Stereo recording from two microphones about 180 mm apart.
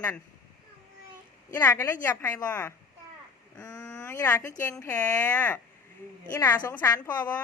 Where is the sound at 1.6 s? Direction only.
10° left (ahead or behind).